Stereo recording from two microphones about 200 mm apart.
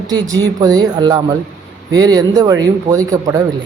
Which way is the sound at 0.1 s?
20° right (ahead or behind).